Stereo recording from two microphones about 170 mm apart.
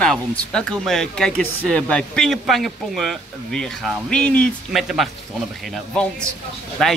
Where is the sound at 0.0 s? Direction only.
5° left (ahead or behind).